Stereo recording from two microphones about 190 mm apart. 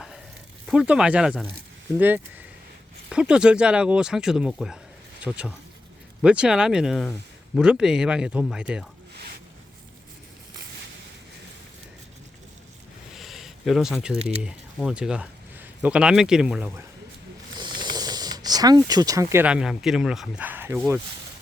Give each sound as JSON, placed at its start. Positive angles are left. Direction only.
{"t": 0.7, "sound": "speech", "side_deg": -5}
{"t": 13.1, "sound": "a sound", "side_deg": 0}
{"t": 14.4, "sound": "speech", "side_deg": -5}
{"t": 17.6, "sound": "speech", "side_deg": -25}